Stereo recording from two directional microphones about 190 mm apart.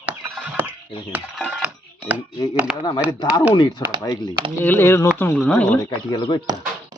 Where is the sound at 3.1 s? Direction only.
20° left (ahead or behind).